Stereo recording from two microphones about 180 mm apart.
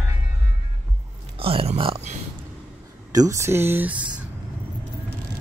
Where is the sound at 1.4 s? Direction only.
30° right (ahead or behind).